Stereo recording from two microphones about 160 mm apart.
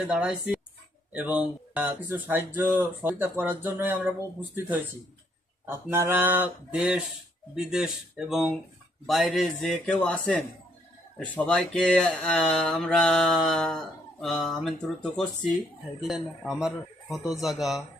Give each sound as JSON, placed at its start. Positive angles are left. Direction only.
{"t": 0.1, "sound": "mantra", "side_deg": -5}
{"t": 1.1, "sound": "speech", "side_deg": -5}
{"t": 5.6, "sound": "speech", "side_deg": -15}
{"t": 7.5, "sound": "mantra", "side_deg": -5}